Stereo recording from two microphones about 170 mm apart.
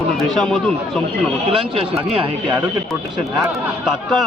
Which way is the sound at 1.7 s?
30° right (ahead or behind).